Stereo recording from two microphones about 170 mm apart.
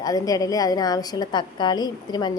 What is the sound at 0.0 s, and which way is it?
A woman's voice, 20° left (ahead or behind).